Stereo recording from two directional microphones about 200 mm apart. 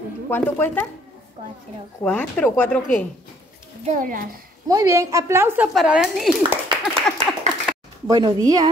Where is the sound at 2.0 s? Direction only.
5° left (ahead or behind).